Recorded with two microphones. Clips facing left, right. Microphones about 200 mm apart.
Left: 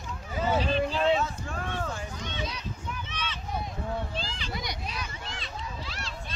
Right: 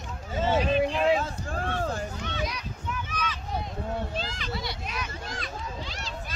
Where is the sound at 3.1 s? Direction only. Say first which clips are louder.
Right 4 dB; 30° left (ahead or behind).